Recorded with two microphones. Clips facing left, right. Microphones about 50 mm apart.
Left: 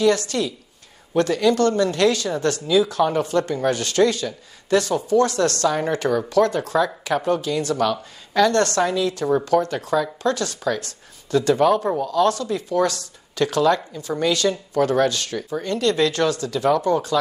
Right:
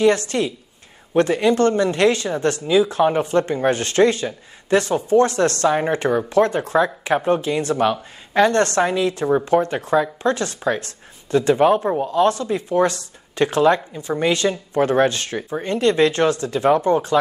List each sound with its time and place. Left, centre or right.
0.0 s speech: right